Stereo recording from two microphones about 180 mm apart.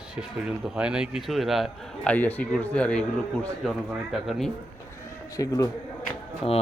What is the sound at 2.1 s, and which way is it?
Speech, 10° left (ahead or behind).